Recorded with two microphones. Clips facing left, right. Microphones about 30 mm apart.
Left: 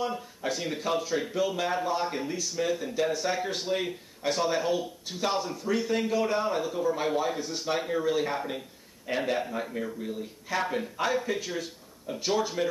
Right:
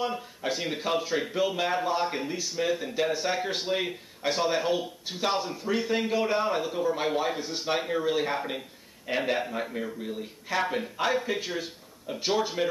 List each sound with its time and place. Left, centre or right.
0.0 s a man's voice: centre